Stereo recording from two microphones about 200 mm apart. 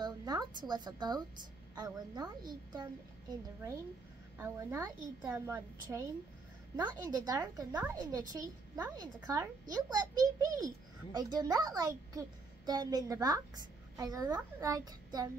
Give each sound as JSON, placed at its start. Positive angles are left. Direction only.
{"t": 0.0, "sound": "a woman's voice", "side_deg": -20}